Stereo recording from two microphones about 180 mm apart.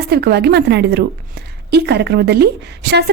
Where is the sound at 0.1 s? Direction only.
65° right (ahead or behind).